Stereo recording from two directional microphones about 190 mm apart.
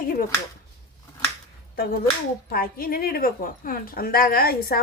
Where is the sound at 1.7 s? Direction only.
55° left (ahead or behind).